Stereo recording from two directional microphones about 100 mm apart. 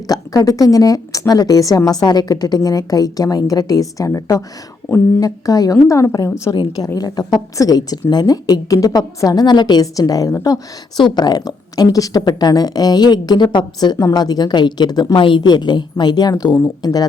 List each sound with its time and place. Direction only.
0.1 s a woman's voice: 35° left (ahead or behind)
11.0 s a woman's voice: 45° left (ahead or behind)